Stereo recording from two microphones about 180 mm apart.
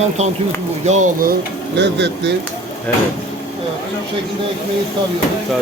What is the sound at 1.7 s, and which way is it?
Speech, 75° right (ahead or behind).